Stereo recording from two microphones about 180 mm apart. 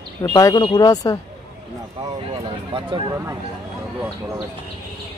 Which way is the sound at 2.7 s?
30° right (ahead or behind).